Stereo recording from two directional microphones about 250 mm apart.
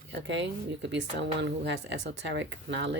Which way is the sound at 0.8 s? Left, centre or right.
Right.